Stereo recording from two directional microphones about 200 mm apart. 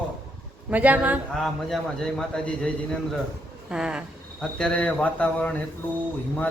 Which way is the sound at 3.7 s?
5° right (ahead or behind).